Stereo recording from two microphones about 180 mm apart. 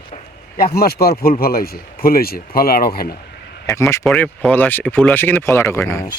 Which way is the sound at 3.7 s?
15° left (ahead or behind).